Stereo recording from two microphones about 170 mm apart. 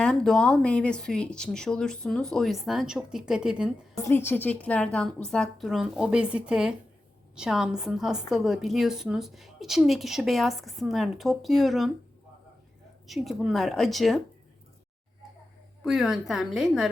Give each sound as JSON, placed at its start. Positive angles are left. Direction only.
{"t": 0.0, "sound": "a woman's voice", "side_deg": 5}
{"t": 3.9, "sound": "a woman's voice", "side_deg": 15}
{"t": 13.1, "sound": "a woman's voice", "side_deg": 0}
{"t": 15.8, "sound": "a woman's voice", "side_deg": 0}